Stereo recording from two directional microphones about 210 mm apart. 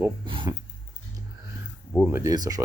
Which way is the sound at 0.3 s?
25° right (ahead or behind).